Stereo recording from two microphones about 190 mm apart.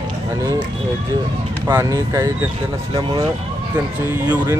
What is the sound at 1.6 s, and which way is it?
Speech, 15° right (ahead or behind).